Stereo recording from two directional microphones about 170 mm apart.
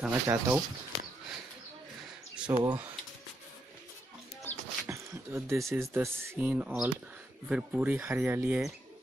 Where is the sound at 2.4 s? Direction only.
5° right (ahead or behind).